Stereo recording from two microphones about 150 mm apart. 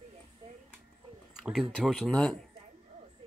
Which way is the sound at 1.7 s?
5° left (ahead or behind).